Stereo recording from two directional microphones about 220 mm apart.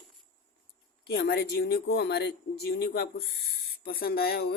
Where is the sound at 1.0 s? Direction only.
45° left (ahead or behind).